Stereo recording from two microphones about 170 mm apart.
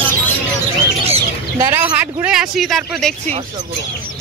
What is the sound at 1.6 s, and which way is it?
Speech, 20° right (ahead or behind).